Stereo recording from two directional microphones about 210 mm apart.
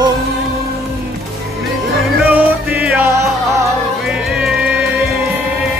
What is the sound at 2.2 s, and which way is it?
Music, 5° right (ahead or behind).